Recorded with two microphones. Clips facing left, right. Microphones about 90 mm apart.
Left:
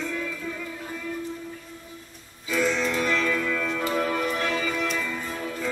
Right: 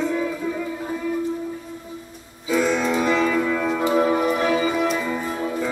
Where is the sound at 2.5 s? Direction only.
5° right (ahead or behind); by 5.6 s 25° right (ahead or behind).